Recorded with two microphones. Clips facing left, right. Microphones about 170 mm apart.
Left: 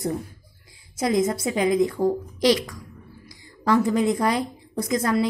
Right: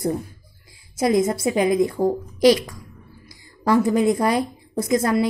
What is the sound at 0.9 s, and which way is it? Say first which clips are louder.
A woman's voice: right 3 dB; 30° right (ahead or behind).